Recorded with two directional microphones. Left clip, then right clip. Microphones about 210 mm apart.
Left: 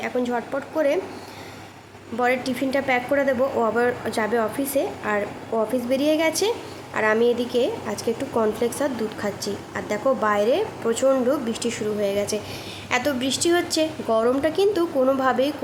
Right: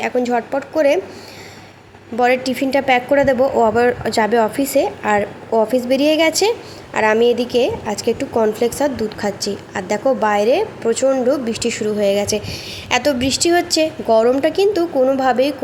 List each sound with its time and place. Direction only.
0.0 s a woman's voice: 20° right (ahead or behind)
2.1 s a woman's voice: 15° right (ahead or behind)